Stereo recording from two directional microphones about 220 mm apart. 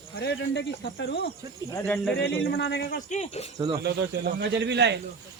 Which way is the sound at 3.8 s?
45° right (ahead or behind).